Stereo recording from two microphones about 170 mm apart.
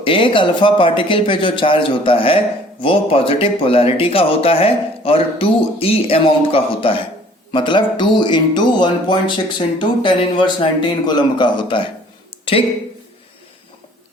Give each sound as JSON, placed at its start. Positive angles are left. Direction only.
{"t": 0.0, "sound": "speech", "side_deg": 30}